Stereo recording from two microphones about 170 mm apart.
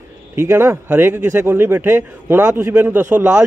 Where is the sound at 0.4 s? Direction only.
15° right (ahead or behind).